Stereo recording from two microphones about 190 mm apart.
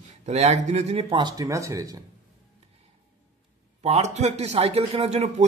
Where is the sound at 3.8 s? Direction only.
35° right (ahead or behind).